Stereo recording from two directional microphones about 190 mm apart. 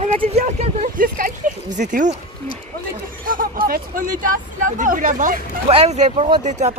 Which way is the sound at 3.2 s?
45° right (ahead or behind).